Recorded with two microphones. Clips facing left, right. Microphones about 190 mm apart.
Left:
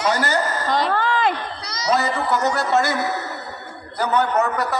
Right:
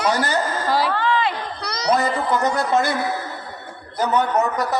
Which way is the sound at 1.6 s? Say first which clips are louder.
Right 4 dB; 60° right (ahead or behind).